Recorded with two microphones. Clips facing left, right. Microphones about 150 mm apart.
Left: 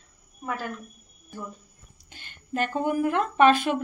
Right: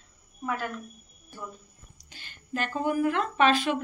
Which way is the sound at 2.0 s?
55° left (ahead or behind).